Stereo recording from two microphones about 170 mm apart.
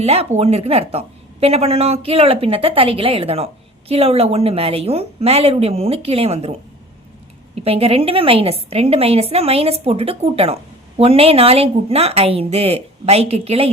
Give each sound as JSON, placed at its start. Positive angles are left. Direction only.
{"t": 0.0, "sound": "a woman's voice", "side_deg": -35}
{"t": 7.6, "sound": "a woman's voice", "side_deg": -35}